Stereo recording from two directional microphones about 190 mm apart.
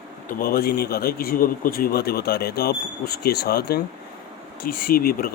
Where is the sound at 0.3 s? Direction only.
50° left (ahead or behind).